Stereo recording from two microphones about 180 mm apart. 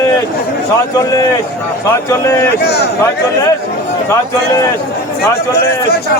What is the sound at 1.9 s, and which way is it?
Speech, 15° left (ahead or behind).